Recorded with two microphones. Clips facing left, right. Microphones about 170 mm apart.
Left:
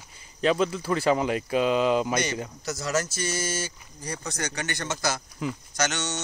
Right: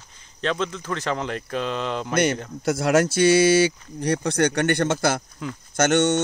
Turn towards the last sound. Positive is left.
turn(degrees=-55)  # may be behind; listen again after turning